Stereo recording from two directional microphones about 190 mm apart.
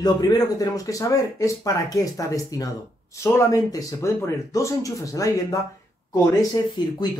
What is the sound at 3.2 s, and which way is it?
Speech, 15° left (ahead or behind).